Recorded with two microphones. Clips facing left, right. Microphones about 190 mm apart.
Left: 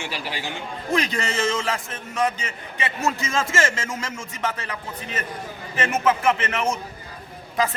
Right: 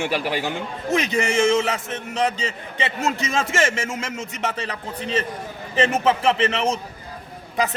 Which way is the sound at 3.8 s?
20° right (ahead or behind).